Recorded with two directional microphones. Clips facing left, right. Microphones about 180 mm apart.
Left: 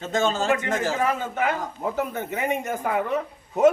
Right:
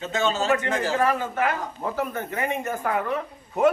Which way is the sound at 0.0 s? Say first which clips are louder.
Left 1 dB; 45° left (ahead or behind).